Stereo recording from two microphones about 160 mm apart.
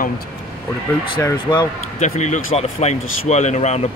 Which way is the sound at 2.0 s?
45° left (ahead or behind).